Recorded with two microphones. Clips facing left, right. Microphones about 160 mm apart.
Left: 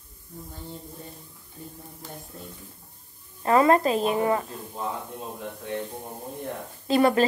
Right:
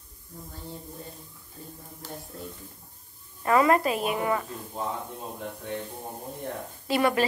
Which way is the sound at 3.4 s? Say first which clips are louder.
Left 2 dB; 30° left (ahead or behind).